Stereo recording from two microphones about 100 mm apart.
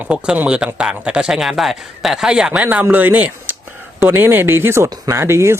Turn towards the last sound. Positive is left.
turn(degrees=-25)  # may be behind; listen again after turning